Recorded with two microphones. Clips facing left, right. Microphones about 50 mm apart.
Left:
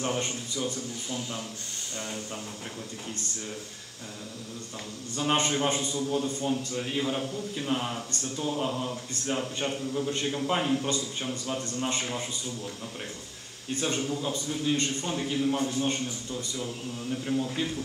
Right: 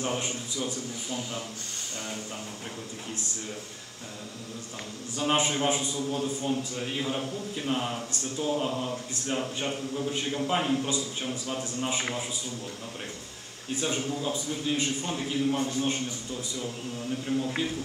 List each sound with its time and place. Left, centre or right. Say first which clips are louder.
0.0 s a man's voice: left 1 dB; centre
5.1 s a man's voice: even; centre
13.7 s a man's voice: even; centre